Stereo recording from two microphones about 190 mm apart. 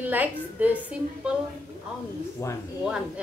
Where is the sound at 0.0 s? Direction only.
10° right (ahead or behind).